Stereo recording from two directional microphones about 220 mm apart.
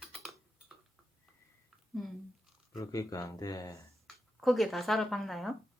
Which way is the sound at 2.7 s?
15° left (ahead or behind).